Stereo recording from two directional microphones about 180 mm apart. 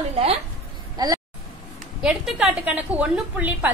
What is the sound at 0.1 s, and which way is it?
Speech, 35° right (ahead or behind).